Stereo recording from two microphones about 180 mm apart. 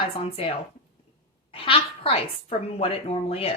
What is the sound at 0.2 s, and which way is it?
Speech, 30° left (ahead or behind).